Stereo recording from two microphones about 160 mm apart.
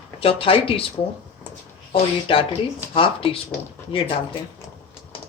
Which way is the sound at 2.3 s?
35° left (ahead or behind).